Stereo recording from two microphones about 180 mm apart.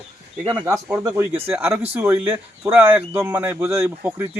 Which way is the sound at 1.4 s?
10° right (ahead or behind).